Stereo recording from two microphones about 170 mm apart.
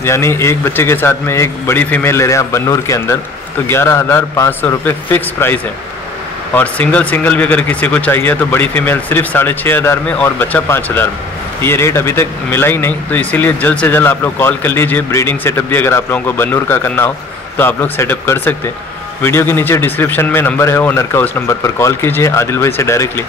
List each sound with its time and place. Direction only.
0.0 s speech: 15° left (ahead or behind)